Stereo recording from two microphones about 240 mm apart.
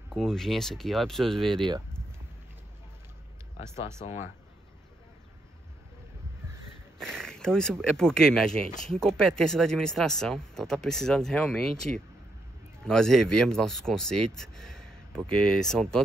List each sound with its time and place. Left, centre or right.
0.1 s speech: centre
4.0 s speech: left
7.0 s speech: centre